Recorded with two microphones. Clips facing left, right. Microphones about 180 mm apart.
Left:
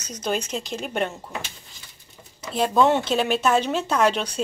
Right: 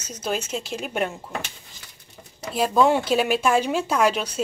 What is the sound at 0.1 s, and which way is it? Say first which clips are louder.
Speech: left 1 dB; 5° right (ahead or behind).